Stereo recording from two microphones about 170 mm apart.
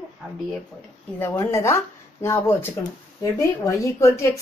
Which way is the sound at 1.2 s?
15° left (ahead or behind).